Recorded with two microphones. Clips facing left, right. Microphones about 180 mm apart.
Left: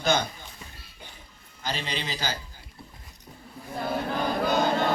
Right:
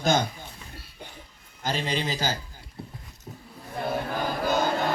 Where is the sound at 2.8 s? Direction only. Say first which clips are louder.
Right 7 dB; 60° right (ahead or behind).